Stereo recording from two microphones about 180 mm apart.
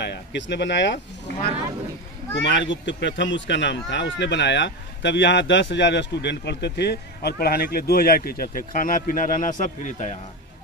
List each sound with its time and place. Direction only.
0.0 s speech: 70° left (ahead or behind)
2.4 s speech: 85° left; by 10.1 s 45° left (ahead or behind)